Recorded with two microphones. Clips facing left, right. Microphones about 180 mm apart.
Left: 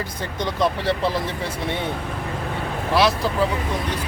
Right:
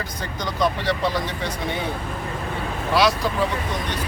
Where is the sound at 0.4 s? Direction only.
30° left (ahead or behind).